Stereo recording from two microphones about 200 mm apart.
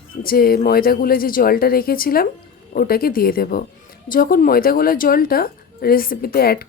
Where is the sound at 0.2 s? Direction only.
50° left (ahead or behind).